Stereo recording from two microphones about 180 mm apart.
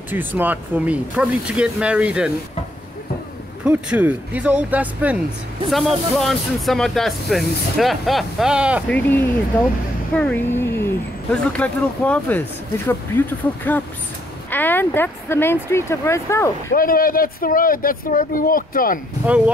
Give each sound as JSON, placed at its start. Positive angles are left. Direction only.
{"t": 0.1, "sound": "speech", "side_deg": -10}
{"t": 3.6, "sound": "speech", "side_deg": -10}
{"t": 8.8, "sound": "speech", "side_deg": 10}
{"t": 14.5, "sound": "speech", "side_deg": 10}
{"t": 16.7, "sound": "speech", "side_deg": 55}
{"t": 19.2, "sound": "speech", "side_deg": -5}